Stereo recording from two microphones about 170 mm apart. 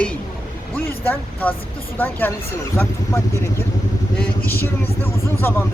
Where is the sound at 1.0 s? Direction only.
10° left (ahead or behind).